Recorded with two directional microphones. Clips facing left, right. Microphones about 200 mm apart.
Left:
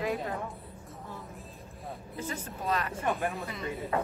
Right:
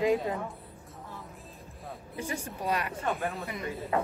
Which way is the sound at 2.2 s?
15° right (ahead or behind).